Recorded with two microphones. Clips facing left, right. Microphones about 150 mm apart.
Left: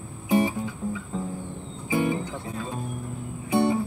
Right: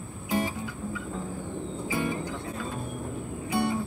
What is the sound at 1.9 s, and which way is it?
Music, 20° left (ahead or behind).